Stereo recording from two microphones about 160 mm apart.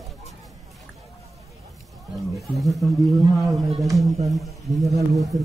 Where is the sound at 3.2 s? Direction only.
20° right (ahead or behind).